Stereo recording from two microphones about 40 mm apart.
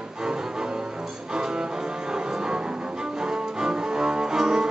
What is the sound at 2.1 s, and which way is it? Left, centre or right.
Music, right.